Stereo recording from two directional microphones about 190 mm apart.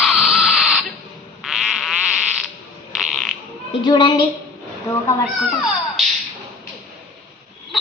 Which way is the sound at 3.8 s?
25° left (ahead or behind).